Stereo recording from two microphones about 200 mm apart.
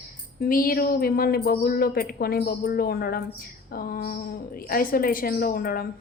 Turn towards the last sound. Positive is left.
turn(degrees=45)  # may be behind; listen again after turning